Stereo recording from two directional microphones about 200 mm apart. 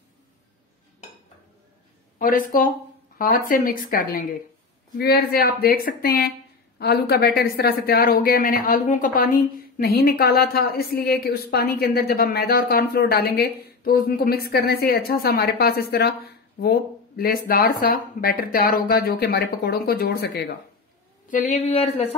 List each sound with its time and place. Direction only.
2.1 s a sound: 45° left (ahead or behind)
3.2 s speech: 45° left (ahead or behind)
21.3 s speech: 40° left (ahead or behind)